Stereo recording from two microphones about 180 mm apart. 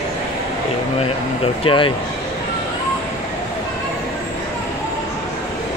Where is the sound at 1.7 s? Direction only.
30° left (ahead or behind).